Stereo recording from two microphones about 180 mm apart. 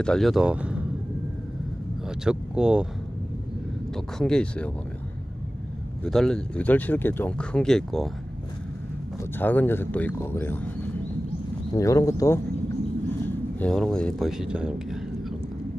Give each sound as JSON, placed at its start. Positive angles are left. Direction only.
{"t": 0.0, "sound": "speech", "side_deg": 5}
{"t": 2.0, "sound": "speech", "side_deg": -5}
{"t": 3.9, "sound": "speech", "side_deg": 5}
{"t": 6.0, "sound": "speech", "side_deg": 0}
{"t": 9.2, "sound": "speech", "side_deg": 10}
{"t": 13.6, "sound": "speech", "side_deg": 5}